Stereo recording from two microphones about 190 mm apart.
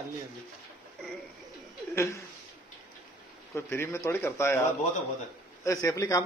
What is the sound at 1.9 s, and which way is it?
Speech, 15° left (ahead or behind).